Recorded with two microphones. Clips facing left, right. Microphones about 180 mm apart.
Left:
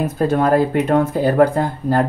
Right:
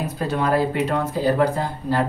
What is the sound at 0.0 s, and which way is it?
Speech, 50° left (ahead or behind).